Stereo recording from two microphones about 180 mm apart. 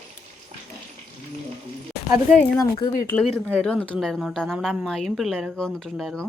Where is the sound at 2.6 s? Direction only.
20° left (ahead or behind).